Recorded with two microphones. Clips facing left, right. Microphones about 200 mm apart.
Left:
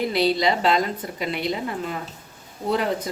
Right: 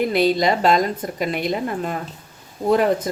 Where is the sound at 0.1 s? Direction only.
50° right (ahead or behind).